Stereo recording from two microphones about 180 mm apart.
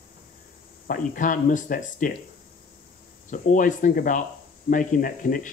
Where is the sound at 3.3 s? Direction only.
45° left (ahead or behind).